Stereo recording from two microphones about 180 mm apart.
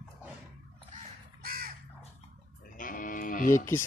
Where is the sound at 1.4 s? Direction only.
55° right (ahead or behind).